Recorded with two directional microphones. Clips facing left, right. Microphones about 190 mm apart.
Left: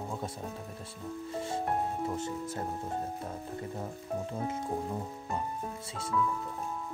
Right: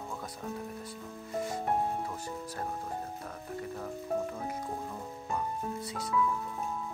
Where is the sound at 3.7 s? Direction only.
25° left (ahead or behind).